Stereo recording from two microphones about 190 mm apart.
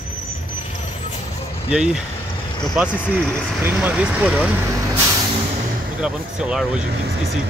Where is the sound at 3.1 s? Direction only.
5° right (ahead or behind).